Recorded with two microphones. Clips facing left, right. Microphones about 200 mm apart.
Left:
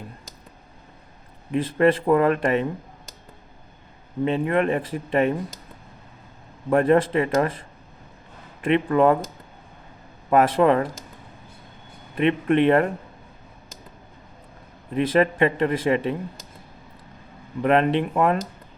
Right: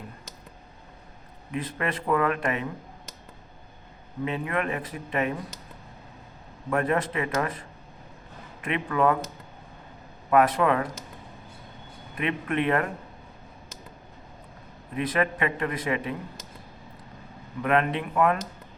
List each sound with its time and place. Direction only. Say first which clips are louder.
1.5 s speech: left 11 dB; 30° left (ahead or behind)
4.3 s speech: left 7 dB; 30° left (ahead or behind)
6.7 s speech: left 8 dB; 30° left (ahead or behind)
8.6 s speech: left 6 dB; 30° left (ahead or behind)
10.2 s speech: left 4 dB; 30° left (ahead or behind)
12.1 s speech: left 8 dB; 30° left (ahead or behind)
14.9 s speech: left 7 dB; 30° left (ahead or behind)
17.6 s speech: left 5 dB; 30° left (ahead or behind)